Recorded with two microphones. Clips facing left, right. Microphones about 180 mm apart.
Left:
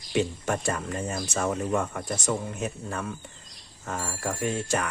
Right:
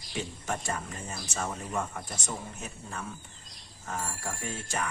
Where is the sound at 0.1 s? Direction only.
70° left (ahead or behind).